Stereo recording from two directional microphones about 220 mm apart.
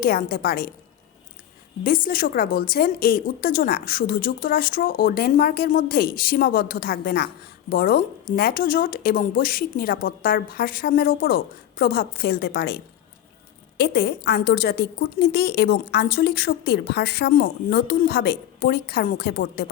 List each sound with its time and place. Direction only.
0.0 s a woman's voice: 40° left (ahead or behind)
1.8 s a woman's voice: 40° left (ahead or behind)